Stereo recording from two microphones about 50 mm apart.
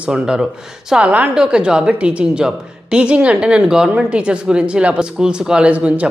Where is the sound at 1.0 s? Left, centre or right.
Right.